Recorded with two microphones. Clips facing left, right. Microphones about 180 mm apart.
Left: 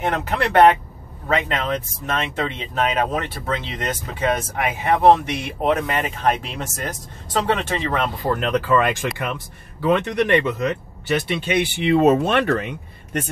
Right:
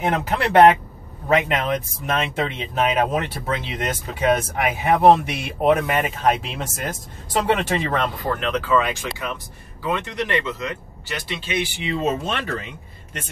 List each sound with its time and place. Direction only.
0.0 s speech: 5° right (ahead or behind)
8.4 s speech: 50° left (ahead or behind)